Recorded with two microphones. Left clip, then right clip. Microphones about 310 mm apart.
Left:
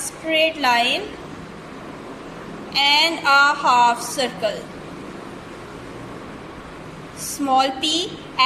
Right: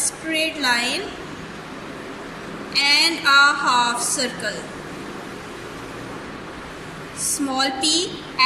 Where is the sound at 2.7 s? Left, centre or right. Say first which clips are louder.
Left 1 dB; centre.